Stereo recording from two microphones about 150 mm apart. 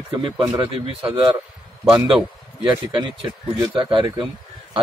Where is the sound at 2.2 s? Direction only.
30° right (ahead or behind).